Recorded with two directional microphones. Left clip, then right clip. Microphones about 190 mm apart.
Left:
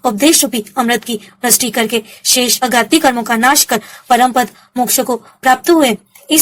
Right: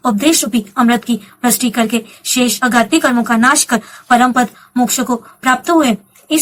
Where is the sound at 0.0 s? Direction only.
55° left (ahead or behind).